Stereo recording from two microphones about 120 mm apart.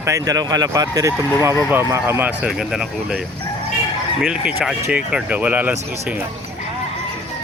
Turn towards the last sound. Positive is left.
turn(degrees=-15)  # may be behind; listen again after turning